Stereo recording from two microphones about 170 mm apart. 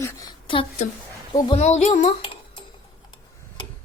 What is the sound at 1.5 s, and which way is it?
Speech, 40° left (ahead or behind).